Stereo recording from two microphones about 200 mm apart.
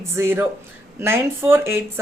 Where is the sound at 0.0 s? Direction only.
10° right (ahead or behind).